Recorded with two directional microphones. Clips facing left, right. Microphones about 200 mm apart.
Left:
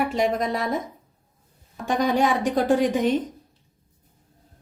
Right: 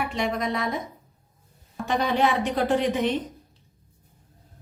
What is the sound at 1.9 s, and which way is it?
A woman's voice, 45° left (ahead or behind).